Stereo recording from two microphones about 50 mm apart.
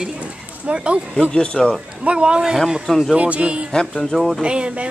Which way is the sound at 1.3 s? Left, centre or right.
Centre.